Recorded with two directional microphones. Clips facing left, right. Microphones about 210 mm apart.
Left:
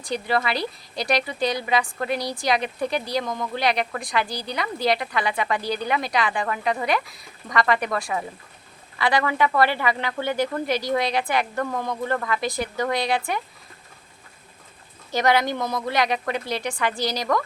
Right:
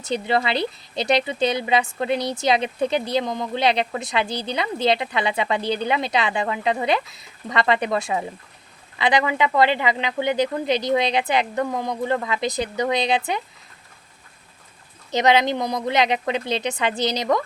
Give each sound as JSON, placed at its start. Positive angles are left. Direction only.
{"t": 0.0, "sound": "speech", "side_deg": -25}
{"t": 15.1, "sound": "speech", "side_deg": -20}